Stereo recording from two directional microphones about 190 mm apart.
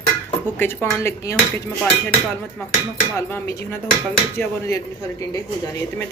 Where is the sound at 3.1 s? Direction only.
10° left (ahead or behind).